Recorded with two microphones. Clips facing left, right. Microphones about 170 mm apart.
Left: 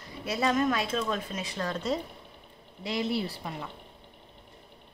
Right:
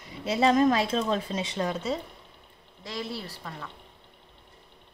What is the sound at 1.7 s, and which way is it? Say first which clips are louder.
Speech: even; 5° right (ahead or behind).